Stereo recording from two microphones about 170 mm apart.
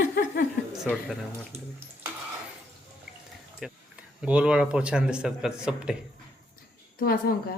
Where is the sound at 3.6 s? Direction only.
5° right (ahead or behind).